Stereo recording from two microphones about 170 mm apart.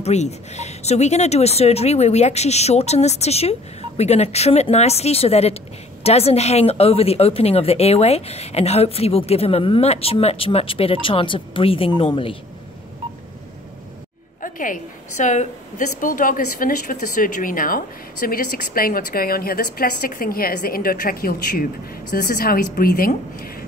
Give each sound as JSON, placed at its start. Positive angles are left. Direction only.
{"t": 0.0, "sound": "a woman's voice", "side_deg": 40}
{"t": 14.4, "sound": "a woman's voice", "side_deg": 50}